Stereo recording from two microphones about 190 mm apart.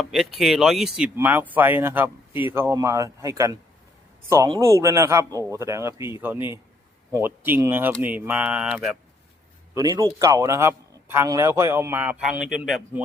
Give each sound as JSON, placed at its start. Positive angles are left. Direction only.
{"t": 0.0, "sound": "speech", "side_deg": 0}
{"t": 8.0, "sound": "a sound", "side_deg": -10}
{"t": 9.7, "sound": "speech", "side_deg": -20}